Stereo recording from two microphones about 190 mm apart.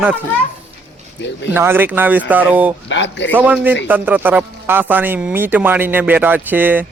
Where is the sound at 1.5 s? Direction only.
10° right (ahead or behind).